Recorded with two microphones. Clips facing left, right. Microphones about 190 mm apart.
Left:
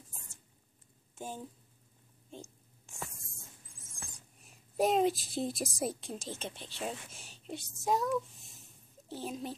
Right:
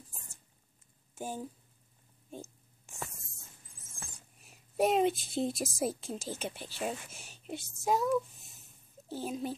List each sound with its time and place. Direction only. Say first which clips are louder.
1.1 s speech: right 3 dB; 10° right (ahead or behind)
3.9 s speech: right 1 dB; centre (ahead or behind)